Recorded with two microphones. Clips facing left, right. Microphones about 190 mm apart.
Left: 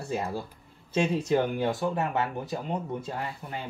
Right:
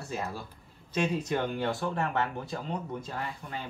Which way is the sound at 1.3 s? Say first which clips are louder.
Left 5 dB; 20° left (ahead or behind).